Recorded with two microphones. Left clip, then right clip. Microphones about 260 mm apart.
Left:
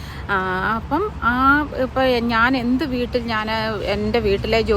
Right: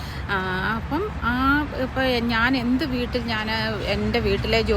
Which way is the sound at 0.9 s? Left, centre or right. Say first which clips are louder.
Left 5 dB; left.